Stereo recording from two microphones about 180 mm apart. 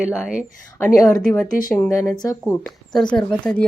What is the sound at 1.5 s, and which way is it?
Speech, 50° left (ahead or behind).